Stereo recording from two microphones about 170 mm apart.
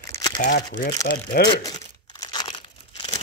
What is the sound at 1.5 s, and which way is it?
Crumpling, 25° left (ahead or behind).